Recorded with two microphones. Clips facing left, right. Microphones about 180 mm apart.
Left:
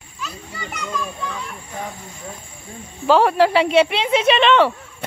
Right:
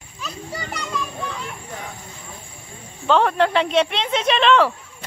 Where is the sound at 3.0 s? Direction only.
5° left (ahead or behind).